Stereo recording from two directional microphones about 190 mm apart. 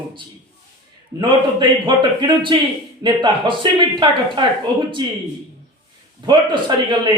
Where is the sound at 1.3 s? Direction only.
25° right (ahead or behind).